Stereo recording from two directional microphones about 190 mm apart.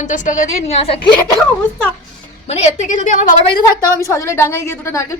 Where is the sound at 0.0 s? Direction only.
40° left (ahead or behind).